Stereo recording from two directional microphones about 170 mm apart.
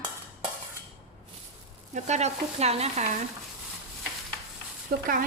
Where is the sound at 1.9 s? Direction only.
40° right (ahead or behind).